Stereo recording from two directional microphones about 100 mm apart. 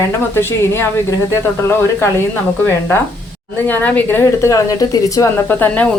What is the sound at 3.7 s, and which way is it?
Speech, 15° left (ahead or behind).